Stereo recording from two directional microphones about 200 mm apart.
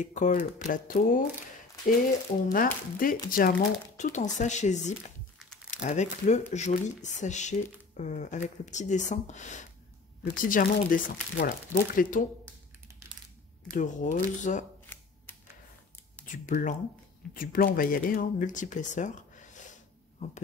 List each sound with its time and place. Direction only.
0.0 s speech: 40° left (ahead or behind)
2.5 s speech: 45° left (ahead or behind)
13.7 s speech: 40° left (ahead or behind)
14.9 s a sound: 10° left (ahead or behind)
16.3 s speech: 40° left (ahead or behind)